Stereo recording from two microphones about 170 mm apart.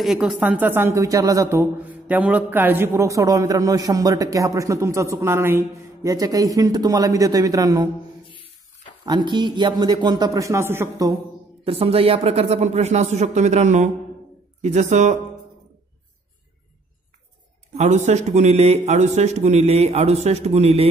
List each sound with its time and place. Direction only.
0.0 s speech: 5° right (ahead or behind); by 7.9 s 20° right (ahead or behind)
9.0 s speech: 25° right (ahead or behind)
11.6 s a man's voice: 35° right (ahead or behind)
17.7 s a man's voice: 40° right (ahead or behind)